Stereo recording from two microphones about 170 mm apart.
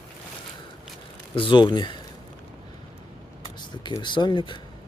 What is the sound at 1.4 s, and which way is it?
Speech, 30° left (ahead or behind).